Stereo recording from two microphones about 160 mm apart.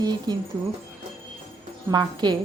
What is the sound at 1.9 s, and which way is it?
Speech, 25° right (ahead or behind).